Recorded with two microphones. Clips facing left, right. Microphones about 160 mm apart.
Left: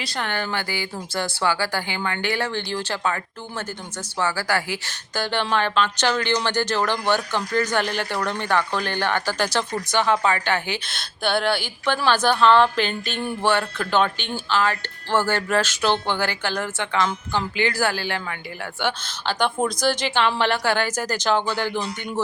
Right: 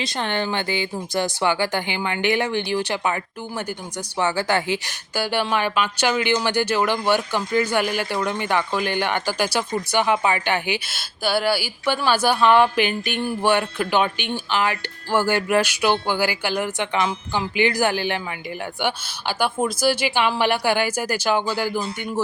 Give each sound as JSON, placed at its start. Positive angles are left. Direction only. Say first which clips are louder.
{"t": 0.0, "sound": "speech", "louder": "right 3 dB", "side_deg": -20}
{"t": 4.2, "sound": "speech", "louder": "right 3 dB", "side_deg": -20}
{"t": 5.1, "sound": "speech", "louder": "right 1 dB", "side_deg": -10}